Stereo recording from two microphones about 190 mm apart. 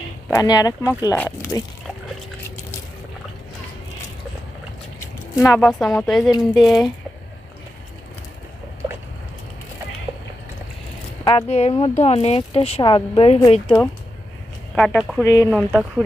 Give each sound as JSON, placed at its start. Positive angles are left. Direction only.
{"t": 0.3, "sound": "speech", "side_deg": 20}
{"t": 4.9, "sound": "a sound", "side_deg": 15}
{"t": 5.5, "sound": "speech", "side_deg": 5}
{"t": 11.3, "sound": "speech", "side_deg": 30}
{"t": 13.7, "sound": "speech", "side_deg": 10}
{"t": 15.2, "sound": "speech", "side_deg": 15}